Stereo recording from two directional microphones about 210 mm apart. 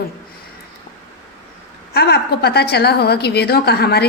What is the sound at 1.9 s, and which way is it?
A woman's voice, 50° left (ahead or behind).